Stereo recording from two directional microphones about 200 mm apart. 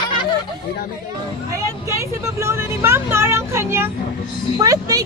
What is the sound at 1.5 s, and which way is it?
Speech, 15° right (ahead or behind).